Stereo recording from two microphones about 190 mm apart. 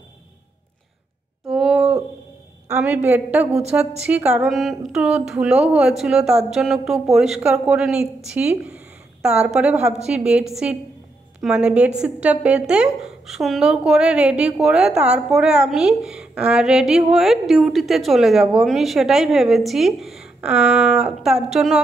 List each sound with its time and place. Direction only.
1.5 s a sound: 5° right (ahead or behind)
2.7 s a woman's voice: 10° right (ahead or behind)
9.8 s a woman's voice: 35° right (ahead or behind)
10.0 s a woman's voice: 5° right (ahead or behind)